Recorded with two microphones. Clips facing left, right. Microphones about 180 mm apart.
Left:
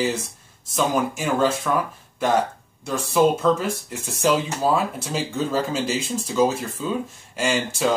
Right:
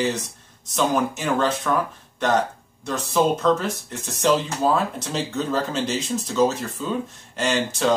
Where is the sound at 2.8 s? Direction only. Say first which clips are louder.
Left 2 dB; 10° left (ahead or behind).